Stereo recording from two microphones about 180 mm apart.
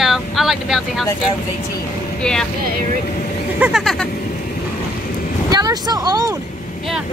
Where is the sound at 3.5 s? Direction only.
5° right (ahead or behind).